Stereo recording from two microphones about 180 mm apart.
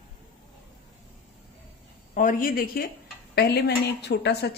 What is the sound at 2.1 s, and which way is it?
A woman's voice, 50° left (ahead or behind).